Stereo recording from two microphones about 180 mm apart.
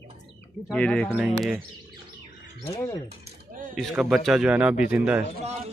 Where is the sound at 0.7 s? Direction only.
5° left (ahead or behind).